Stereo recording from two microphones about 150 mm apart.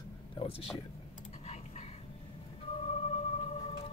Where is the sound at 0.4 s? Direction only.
40° left (ahead or behind).